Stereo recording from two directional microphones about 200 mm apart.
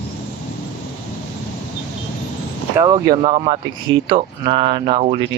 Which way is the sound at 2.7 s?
20° right (ahead or behind).